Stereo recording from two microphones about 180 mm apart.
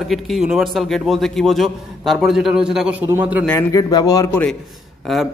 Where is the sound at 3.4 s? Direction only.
15° left (ahead or behind).